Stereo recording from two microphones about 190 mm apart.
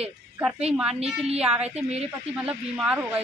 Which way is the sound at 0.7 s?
5° right (ahead or behind).